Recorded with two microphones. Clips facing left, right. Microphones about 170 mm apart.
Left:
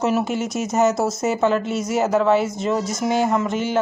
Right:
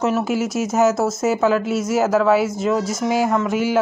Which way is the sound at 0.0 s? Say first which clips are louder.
Right 1 dB; centre (ahead or behind).